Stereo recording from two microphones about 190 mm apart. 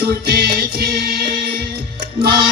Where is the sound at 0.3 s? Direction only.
55° right (ahead or behind).